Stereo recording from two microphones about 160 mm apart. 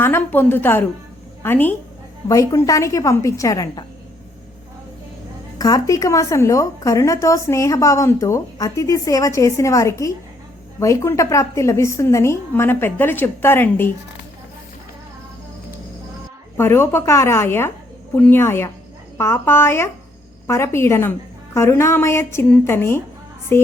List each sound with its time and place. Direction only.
0.0 s a woman's voice: 15° left (ahead or behind)
5.5 s a woman's voice: 20° left (ahead or behind)
16.6 s a woman's voice: 15° left (ahead or behind)